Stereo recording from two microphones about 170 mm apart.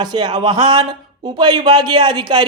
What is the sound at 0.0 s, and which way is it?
Speech, 25° right (ahead or behind).